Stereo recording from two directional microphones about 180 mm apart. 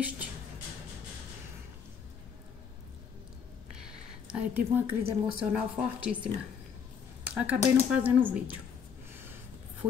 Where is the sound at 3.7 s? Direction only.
5° right (ahead or behind).